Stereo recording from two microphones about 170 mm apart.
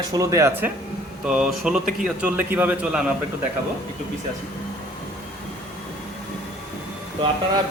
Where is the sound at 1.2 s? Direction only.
5° right (ahead or behind).